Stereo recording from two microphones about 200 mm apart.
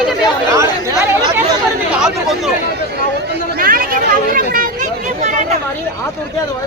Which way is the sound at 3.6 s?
45° right (ahead or behind).